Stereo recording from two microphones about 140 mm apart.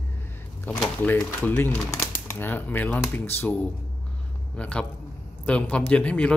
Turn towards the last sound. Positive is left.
turn(degrees=10)  # may be behind; listen again after turning